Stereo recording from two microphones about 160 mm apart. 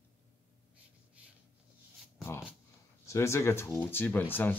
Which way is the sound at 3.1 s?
15° left (ahead or behind).